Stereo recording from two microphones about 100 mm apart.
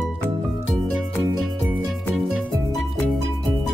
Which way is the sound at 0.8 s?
Centre (ahead or behind).